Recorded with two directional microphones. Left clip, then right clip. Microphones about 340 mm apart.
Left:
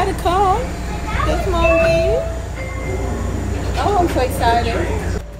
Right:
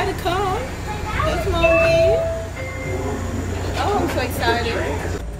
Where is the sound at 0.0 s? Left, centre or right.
Centre.